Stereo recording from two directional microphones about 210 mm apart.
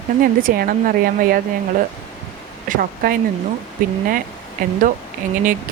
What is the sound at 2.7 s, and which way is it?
Speech, 45° right (ahead or behind).